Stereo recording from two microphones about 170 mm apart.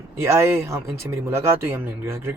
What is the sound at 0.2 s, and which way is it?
Speech, 15° right (ahead or behind).